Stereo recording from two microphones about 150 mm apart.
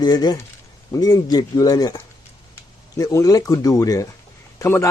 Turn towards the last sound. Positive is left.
turn(degrees=20)  # may be behind; listen again after turning